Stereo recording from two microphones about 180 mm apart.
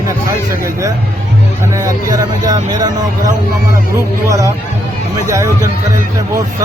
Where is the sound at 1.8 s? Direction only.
20° right (ahead or behind).